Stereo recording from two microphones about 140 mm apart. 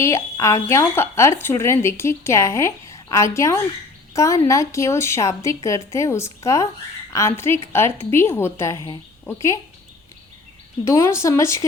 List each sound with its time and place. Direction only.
0.0 s a woman's voice: 20° left (ahead or behind)
10.8 s speech: 20° left (ahead or behind)